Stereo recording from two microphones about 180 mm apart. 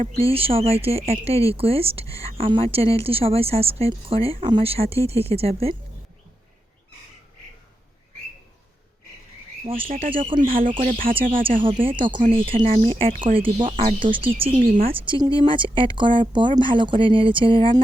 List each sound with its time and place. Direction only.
0.2 s speech: 30° right (ahead or behind)
9.6 s speech: 30° right (ahead or behind)
10.8 s speech: 50° right (ahead or behind)
11.1 s speech: 30° right (ahead or behind)